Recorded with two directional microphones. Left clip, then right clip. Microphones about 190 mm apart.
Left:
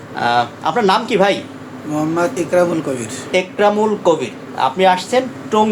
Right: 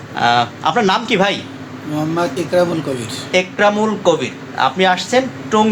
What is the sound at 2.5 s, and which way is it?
Speech, 10° left (ahead or behind).